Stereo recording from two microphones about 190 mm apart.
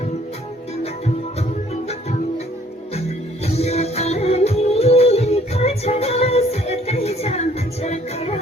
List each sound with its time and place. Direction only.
0.8 s music: 35° left (ahead or behind)
3.4 s music: 35° left (ahead or behind)